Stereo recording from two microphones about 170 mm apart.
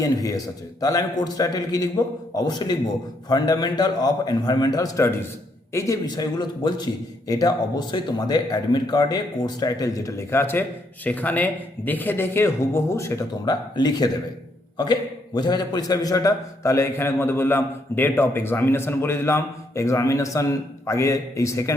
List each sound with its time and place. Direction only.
0.0 s a man's voice: 20° left (ahead or behind)
15.4 s a man's voice: 25° left (ahead or behind)